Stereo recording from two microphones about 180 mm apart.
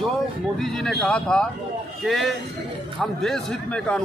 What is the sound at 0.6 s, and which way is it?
Speech, centre (ahead or behind).